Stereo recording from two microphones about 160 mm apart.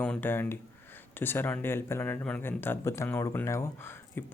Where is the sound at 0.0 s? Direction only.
10° left (ahead or behind).